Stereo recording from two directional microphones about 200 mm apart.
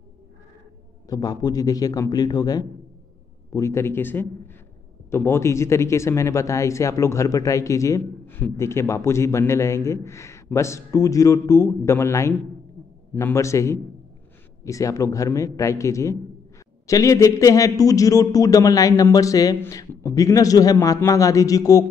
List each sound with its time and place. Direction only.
1.0 s a man's voice: 20° left (ahead or behind)